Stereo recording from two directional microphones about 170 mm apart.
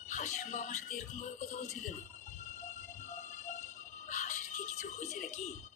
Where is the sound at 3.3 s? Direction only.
50° left (ahead or behind).